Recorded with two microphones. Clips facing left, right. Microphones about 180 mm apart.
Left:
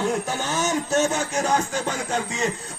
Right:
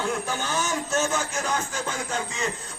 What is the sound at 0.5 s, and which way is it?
Speech, 40° left (ahead or behind).